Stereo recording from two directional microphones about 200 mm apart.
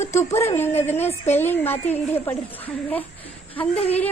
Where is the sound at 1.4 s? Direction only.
10° left (ahead or behind).